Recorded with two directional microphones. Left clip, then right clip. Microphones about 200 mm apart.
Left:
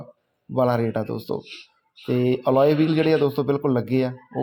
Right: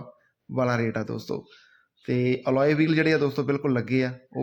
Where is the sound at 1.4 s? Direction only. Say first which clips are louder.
Left 12 dB; 50° left (ahead or behind).